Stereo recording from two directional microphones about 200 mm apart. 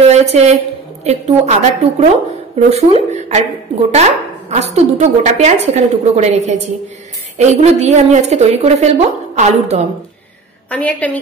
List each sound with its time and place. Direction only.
0.1 s a woman's voice: 35° right (ahead or behind)
10.7 s a woman's voice: 5° left (ahead or behind)